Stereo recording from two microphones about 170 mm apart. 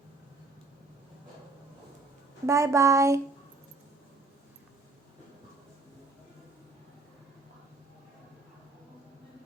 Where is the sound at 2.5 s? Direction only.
15° right (ahead or behind).